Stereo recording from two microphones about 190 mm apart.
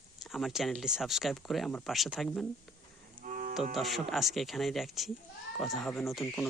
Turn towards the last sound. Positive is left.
turn(degrees=0)  # may be behind; listen again after turning